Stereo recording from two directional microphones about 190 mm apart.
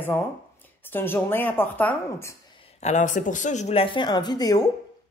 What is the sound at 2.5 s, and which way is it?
Speech, 40° left (ahead or behind).